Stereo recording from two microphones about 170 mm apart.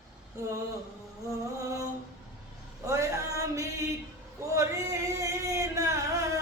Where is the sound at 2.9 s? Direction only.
20° right (ahead or behind).